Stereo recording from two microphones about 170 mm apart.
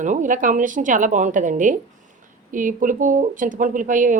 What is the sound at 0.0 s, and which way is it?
Speech, 50° right (ahead or behind).